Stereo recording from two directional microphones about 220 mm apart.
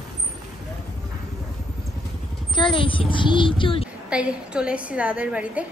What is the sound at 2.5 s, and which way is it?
A child's voice, 20° left (ahead or behind).